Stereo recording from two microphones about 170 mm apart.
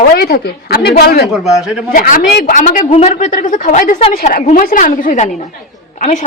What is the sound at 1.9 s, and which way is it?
A woman's voice, 55° left (ahead or behind).